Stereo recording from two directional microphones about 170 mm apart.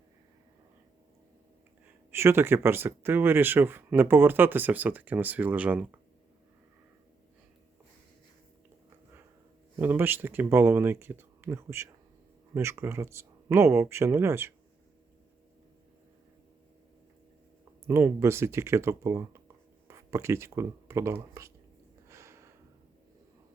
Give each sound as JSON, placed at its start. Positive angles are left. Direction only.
{"t": 2.0, "sound": "speech", "side_deg": -15}
{"t": 9.7, "sound": "speech", "side_deg": -10}
{"t": 17.8, "sound": "speech", "side_deg": -15}
{"t": 22.1, "sound": "a sound", "side_deg": -15}